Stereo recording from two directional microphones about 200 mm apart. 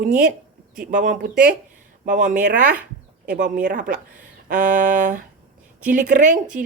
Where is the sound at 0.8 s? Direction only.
40° right (ahead or behind).